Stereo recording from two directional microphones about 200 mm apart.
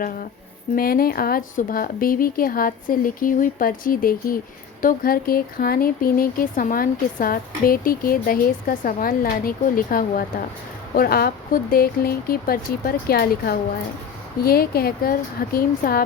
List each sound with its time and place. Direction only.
0.0 s speech: 45° left (ahead or behind)